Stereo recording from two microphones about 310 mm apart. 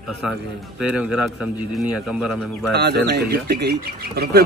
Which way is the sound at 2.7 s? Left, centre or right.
Right.